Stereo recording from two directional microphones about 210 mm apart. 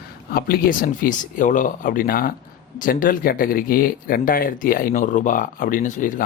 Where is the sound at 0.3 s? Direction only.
45° left (ahead or behind).